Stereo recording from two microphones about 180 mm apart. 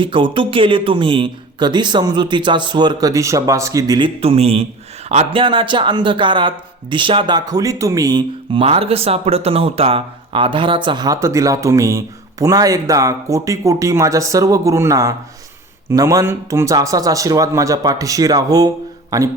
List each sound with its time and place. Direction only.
0.0 s speech: 30° right (ahead or behind)